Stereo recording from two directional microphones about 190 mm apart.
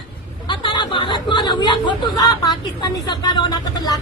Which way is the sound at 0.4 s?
25° left (ahead or behind).